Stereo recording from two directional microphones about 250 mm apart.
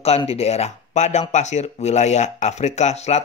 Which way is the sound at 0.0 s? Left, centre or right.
Left.